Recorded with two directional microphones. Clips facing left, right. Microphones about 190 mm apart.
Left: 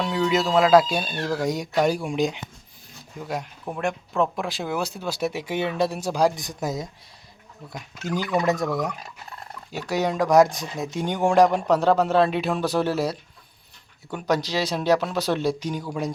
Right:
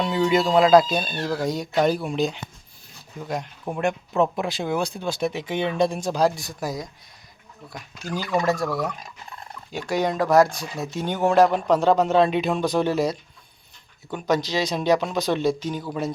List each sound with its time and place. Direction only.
0.0 s speech: centre (ahead or behind); by 8.7 s 20° left (ahead or behind)
9.7 s speech: 10° left (ahead or behind)
10.5 s speech: 20° left (ahead or behind)